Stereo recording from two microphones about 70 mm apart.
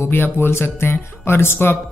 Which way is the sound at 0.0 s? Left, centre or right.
Left.